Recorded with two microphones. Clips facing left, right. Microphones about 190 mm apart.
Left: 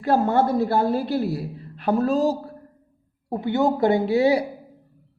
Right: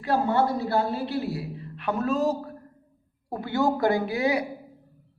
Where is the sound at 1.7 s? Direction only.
35° left (ahead or behind).